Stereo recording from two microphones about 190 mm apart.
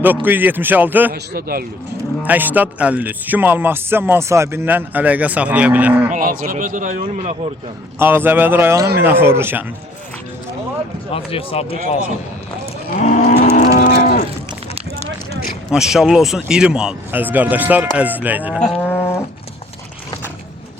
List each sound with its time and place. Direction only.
0.0 s speech: 10° right (ahead or behind)
1.1 s a man's voice: 55° right (ahead or behind)
2.2 s speech: 10° right (ahead or behind)
6.1 s a man's voice: 45° right (ahead or behind)
7.9 s speech: 10° right (ahead or behind)
11.1 s speech: 30° left (ahead or behind)
13.0 s moo: 40° left (ahead or behind)
13.6 s moo: 50° left (ahead or behind)
15.4 s speech: 5° right (ahead or behind)
18.6 s cattle: 5° left (ahead or behind)